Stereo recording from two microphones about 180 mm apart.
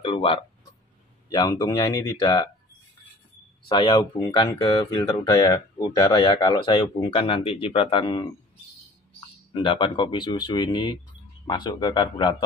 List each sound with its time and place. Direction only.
0.0 s speech: 30° left (ahead or behind)
3.6 s speech: 25° left (ahead or behind)
9.5 s speech: 25° left (ahead or behind)